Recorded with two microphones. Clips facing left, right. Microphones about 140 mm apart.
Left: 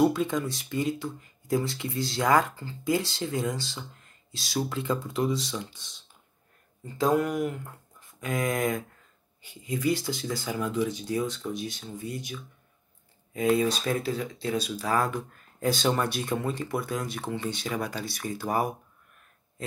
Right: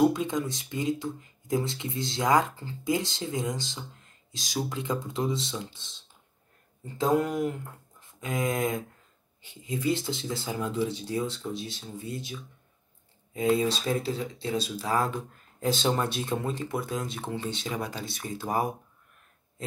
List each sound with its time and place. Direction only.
0.1 s speech: 20° right (ahead or behind)